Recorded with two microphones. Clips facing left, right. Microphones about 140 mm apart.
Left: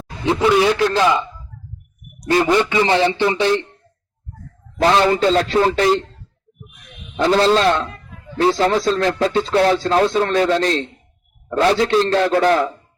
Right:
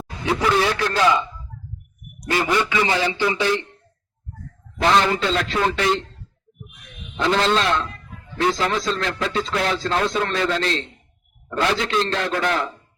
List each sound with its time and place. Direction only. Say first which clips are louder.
0.6 s a man's voice: left 4 dB; 20° left (ahead or behind)
2.5 s speech: left 3 dB; 30° left (ahead or behind)
4.8 s speech: left 4 dB; 35° left (ahead or behind)
7.2 s speech: left 5 dB; 35° left (ahead or behind)